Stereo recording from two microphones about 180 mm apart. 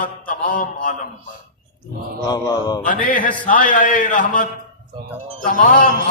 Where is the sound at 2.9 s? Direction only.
50° left (ahead or behind).